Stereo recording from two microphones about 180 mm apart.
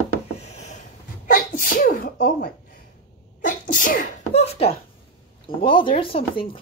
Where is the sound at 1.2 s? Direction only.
50° left (ahead or behind).